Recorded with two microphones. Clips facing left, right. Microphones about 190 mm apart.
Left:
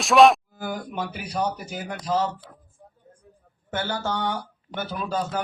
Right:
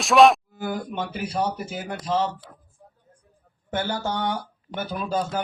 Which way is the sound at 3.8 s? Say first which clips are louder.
Right 1 dB; 15° right (ahead or behind).